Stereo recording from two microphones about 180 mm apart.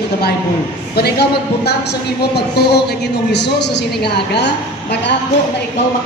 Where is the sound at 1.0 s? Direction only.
65° left (ahead or behind).